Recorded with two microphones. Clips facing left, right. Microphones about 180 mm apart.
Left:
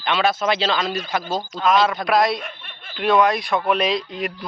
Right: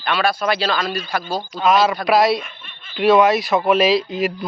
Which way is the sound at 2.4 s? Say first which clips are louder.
Left 4 dB; 65° left (ahead or behind).